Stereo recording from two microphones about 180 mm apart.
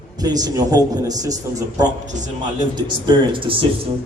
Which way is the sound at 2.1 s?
45° right (ahead or behind).